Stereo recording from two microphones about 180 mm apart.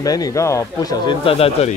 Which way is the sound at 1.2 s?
30° left (ahead or behind).